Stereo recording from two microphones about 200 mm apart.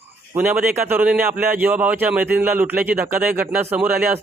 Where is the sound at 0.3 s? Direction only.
10° right (ahead or behind).